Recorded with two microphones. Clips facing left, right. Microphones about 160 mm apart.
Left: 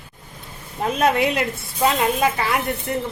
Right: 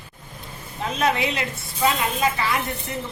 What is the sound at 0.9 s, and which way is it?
A woman's voice, 55° left (ahead or behind).